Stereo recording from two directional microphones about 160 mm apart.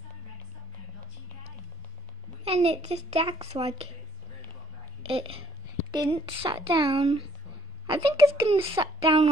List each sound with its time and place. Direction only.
2.4 s speech: 40° right (ahead or behind)
5.0 s a woman's voice: 35° right (ahead or behind)